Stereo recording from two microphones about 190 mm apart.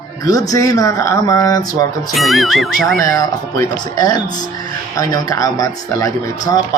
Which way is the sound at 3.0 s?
15° left (ahead or behind).